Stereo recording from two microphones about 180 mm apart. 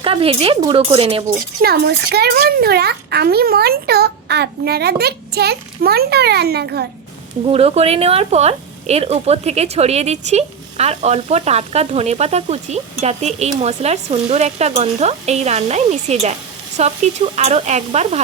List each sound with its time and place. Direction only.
0.0 s speech: 30° right (ahead or behind)
1.3 s a child's voice: 55° right (ahead or behind)
7.4 s speech: 35° right (ahead or behind)